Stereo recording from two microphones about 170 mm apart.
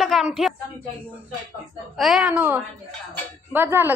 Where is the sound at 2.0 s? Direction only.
Centre (ahead or behind).